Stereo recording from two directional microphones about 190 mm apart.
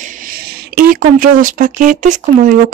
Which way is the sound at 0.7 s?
50° right (ahead or behind).